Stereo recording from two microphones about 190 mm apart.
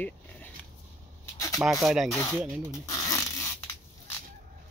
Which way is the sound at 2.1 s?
15° left (ahead or behind).